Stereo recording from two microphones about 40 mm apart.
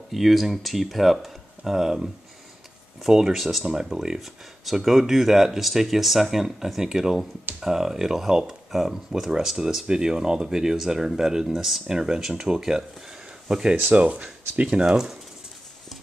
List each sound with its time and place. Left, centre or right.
0.1 s speech: centre
3.1 s speech: centre
3.3 s speech: centre
3.9 s speech: centre
4.2 s speech: centre
13.9 s speech: right